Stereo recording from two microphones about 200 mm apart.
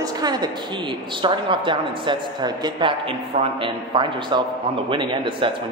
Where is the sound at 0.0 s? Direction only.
20° right (ahead or behind).